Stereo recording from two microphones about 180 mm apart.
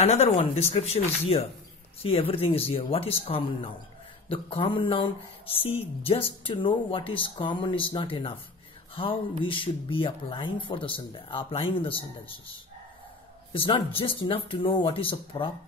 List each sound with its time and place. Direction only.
0.0 s speech: 35° left (ahead or behind)
13.5 s speech: 30° left (ahead or behind)